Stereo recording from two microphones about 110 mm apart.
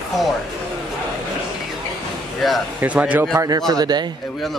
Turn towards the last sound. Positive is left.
turn(degrees=-40)  # may be behind; listen again after turning